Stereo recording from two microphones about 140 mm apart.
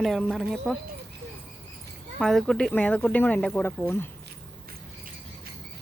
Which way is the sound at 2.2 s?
Centre (ahead or behind).